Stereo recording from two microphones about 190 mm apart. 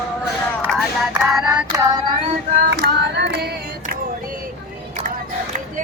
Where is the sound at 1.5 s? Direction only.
20° right (ahead or behind).